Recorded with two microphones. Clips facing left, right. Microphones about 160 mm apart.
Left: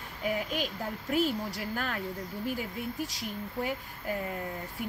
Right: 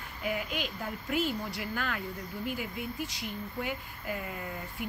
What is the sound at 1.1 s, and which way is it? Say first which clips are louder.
Speech: left 3 dB; 35° left (ahead or behind).